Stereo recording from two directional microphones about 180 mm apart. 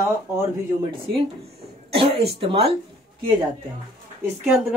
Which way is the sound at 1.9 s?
30° right (ahead or behind).